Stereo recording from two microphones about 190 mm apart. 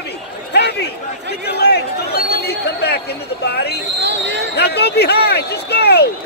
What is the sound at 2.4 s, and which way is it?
Speech, 60° left (ahead or behind).